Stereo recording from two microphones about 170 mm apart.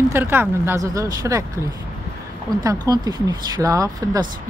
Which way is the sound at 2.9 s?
25° right (ahead or behind).